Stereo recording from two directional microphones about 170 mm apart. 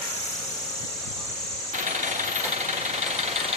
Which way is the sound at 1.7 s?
45° right (ahead or behind).